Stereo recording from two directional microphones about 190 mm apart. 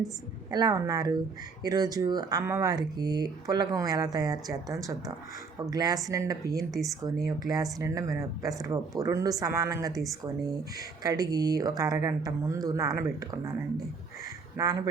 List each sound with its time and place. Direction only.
0.5 s speech: 20° right (ahead or behind)
11.0 s speech: 20° right (ahead or behind)
14.6 s speech: 20° right (ahead or behind)